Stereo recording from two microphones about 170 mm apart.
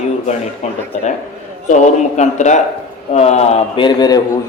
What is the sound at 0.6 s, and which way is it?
A man's voice, 40° left (ahead or behind).